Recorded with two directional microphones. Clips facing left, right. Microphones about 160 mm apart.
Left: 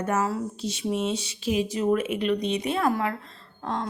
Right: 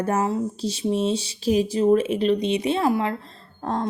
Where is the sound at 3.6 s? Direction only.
40° right (ahead or behind).